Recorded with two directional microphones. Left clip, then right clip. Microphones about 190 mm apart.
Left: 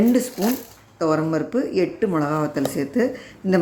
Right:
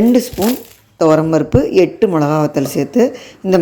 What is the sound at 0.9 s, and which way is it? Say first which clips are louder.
Speech: right 10 dB; 20° right (ahead or behind).